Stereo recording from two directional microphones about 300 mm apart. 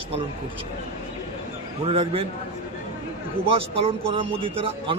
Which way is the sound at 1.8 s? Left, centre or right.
Centre.